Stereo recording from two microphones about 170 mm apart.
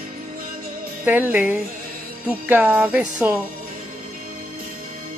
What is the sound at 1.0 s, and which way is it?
Music, 10° right (ahead or behind).